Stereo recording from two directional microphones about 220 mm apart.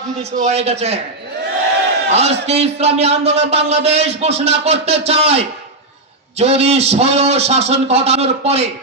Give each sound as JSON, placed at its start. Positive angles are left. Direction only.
{"t": 0.5, "sound": "speech", "side_deg": -30}
{"t": 2.0, "sound": "a man's voice", "side_deg": -30}